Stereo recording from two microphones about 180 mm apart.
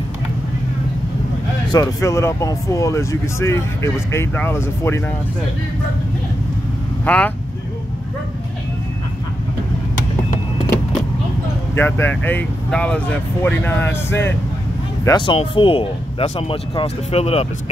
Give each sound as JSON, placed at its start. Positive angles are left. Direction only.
{"t": 1.7, "sound": "speech", "side_deg": 20}
{"t": 7.1, "sound": "speech", "side_deg": 10}
{"t": 11.7, "sound": "speech", "side_deg": 10}
{"t": 15.0, "sound": "speech", "side_deg": 25}